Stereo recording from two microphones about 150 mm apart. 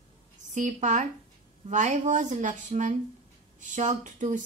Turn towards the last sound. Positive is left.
turn(degrees=-55)  # may be behind; listen again after turning